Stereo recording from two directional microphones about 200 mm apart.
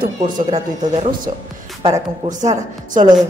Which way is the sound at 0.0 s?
35° right (ahead or behind).